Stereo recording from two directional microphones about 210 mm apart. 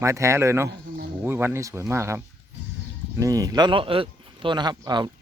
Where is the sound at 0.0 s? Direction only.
15° right (ahead or behind).